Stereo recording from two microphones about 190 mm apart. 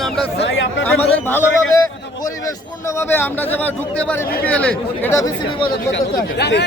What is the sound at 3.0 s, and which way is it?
Speech, 10° left (ahead or behind).